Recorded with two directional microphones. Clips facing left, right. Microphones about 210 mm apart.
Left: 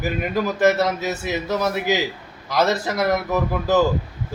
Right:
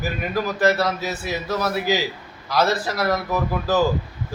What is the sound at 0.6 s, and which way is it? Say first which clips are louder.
A man's voice: left 2 dB; 20° left (ahead or behind).